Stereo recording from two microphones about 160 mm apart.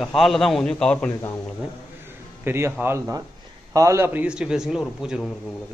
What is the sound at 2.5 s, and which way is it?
A man's voice, 15° right (ahead or behind).